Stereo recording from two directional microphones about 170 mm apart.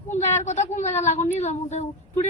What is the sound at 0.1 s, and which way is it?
A woman's voice, 45° left (ahead or behind).